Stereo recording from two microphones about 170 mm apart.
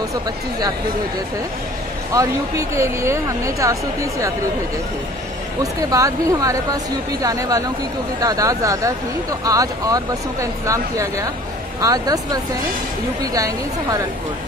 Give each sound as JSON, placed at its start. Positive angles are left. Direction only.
{"t": 2.1, "sound": "speech", "side_deg": -20}
{"t": 5.6, "sound": "speech", "side_deg": -20}